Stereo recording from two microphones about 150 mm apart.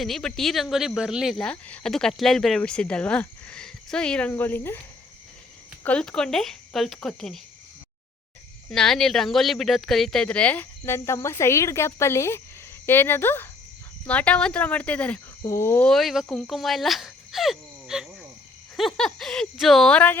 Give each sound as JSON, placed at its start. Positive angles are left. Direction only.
{"t": 0.0, "sound": "speech", "side_deg": 5}
{"t": 5.8, "sound": "speech", "side_deg": 5}
{"t": 8.7, "sound": "speech", "side_deg": 5}
{"t": 15.9, "sound": "speech", "side_deg": 0}